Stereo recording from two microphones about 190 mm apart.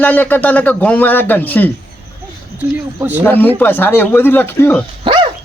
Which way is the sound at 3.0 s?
10° right (ahead or behind).